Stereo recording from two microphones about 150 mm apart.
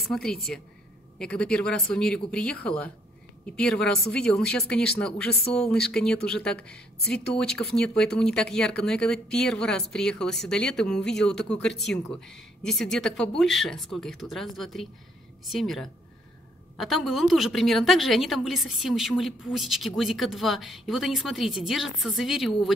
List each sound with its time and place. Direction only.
0.0 s a woman's voice: centre (ahead or behind)